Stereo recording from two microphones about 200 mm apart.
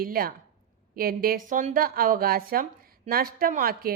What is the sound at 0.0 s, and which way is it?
A woman's voice, 45° right (ahead or behind).